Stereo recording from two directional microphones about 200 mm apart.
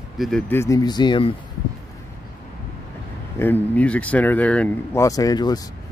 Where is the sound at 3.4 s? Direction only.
10° left (ahead or behind).